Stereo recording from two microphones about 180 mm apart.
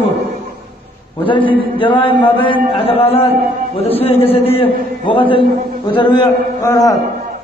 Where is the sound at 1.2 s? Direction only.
25° left (ahead or behind).